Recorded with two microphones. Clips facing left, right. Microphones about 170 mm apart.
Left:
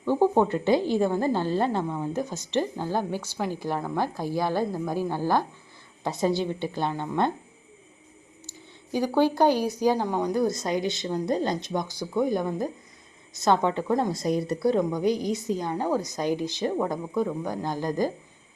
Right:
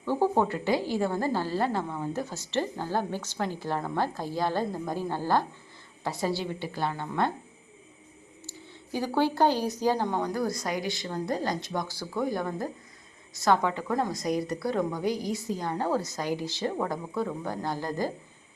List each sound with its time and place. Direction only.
0.0 s a woman's voice: 15° left (ahead or behind)
8.4 s a woman's voice: 15° left (ahead or behind)